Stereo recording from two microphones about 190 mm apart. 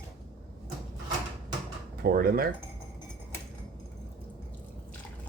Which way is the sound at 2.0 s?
50° right (ahead or behind).